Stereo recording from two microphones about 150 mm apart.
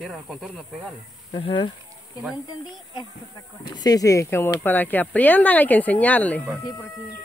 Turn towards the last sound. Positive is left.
turn(degrees=25)  # may be behind; listen again after turning